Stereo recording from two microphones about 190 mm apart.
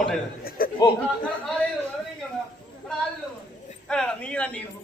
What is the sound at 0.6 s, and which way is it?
Chatter, 50° left (ahead or behind).